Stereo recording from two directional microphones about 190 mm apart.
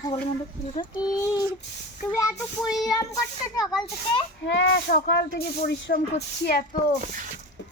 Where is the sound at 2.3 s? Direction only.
5° left (ahead or behind).